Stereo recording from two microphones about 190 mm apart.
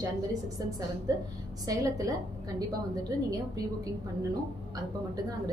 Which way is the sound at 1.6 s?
15° right (ahead or behind).